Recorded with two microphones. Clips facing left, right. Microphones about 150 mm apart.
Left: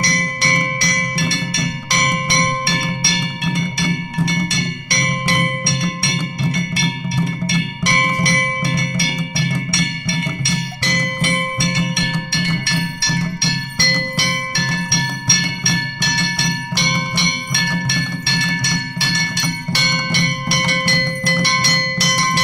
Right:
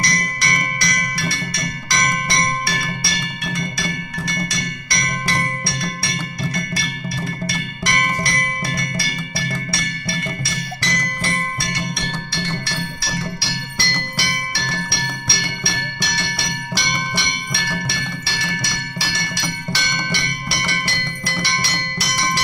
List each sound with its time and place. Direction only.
0.0 s music: 30° left (ahead or behind)
12.4 s music: 65° left (ahead or behind)
18.2 s music: 60° left (ahead or behind)